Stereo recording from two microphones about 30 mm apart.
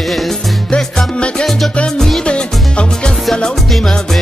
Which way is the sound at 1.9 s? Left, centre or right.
Centre.